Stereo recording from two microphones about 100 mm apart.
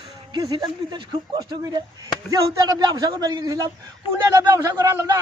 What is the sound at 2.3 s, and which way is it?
A man's voice, 40° right (ahead or behind).